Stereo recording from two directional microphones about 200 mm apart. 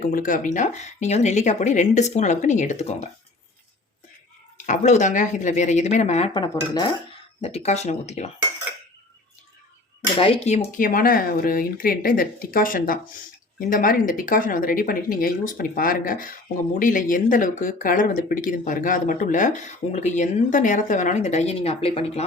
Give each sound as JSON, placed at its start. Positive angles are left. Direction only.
{"t": 0.1, "sound": "speech", "side_deg": 45}
{"t": 4.5, "sound": "speech", "side_deg": 40}
{"t": 6.3, "sound": "speech", "side_deg": 20}
{"t": 7.4, "sound": "speech", "side_deg": 35}
{"t": 10.2, "sound": "speech", "side_deg": 30}